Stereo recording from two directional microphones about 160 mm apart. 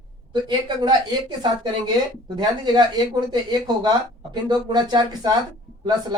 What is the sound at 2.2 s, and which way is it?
Speech, 25° right (ahead or behind).